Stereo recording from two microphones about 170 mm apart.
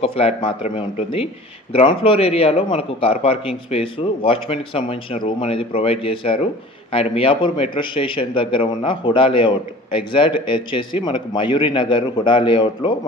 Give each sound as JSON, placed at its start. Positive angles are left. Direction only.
{"t": 0.0, "sound": "a man's voice", "side_deg": 35}